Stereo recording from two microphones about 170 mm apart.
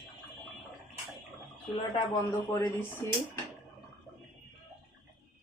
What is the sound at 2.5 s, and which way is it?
Speech, 15° left (ahead or behind).